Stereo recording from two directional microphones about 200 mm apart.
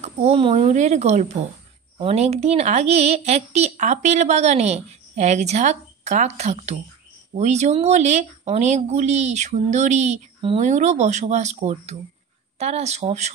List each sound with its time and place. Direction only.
0.0 s speech: 30° right (ahead or behind)